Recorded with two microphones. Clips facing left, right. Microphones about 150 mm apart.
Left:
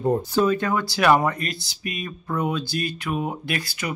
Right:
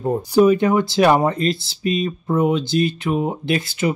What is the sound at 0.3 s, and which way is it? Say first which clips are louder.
Speech: right 7 dB; 15° right (ahead or behind).